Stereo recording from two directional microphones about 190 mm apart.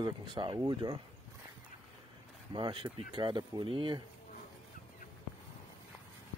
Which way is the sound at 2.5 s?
25° right (ahead or behind).